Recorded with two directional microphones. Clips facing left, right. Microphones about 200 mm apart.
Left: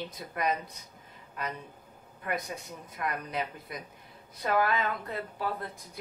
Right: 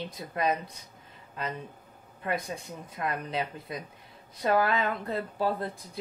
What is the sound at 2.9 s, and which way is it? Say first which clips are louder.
Speech: right 2 dB; 25° right (ahead or behind).